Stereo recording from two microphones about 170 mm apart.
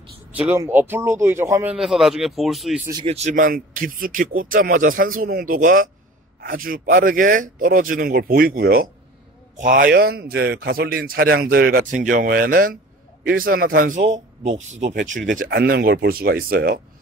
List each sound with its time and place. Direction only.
0.3 s speech: 10° right (ahead or behind)
3.1 s speech: 40° right (ahead or behind)
14.5 s speech: 45° right (ahead or behind)